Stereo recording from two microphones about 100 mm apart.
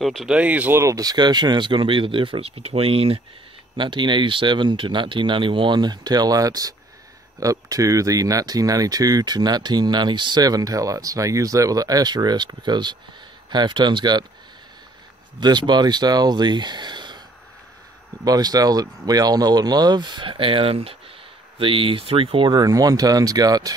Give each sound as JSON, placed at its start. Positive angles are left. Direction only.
{"t": 0.0, "sound": "speech", "side_deg": 0}
{"t": 0.3, "sound": "speech", "side_deg": -15}
{"t": 0.7, "sound": "speech", "side_deg": -35}
{"t": 3.7, "sound": "speech", "side_deg": -55}
{"t": 15.4, "sound": "speech", "side_deg": -45}
{"t": 18.2, "sound": "speech", "side_deg": -40}